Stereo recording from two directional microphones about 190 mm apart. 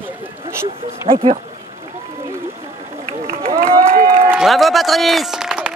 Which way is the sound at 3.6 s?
50° right (ahead or behind).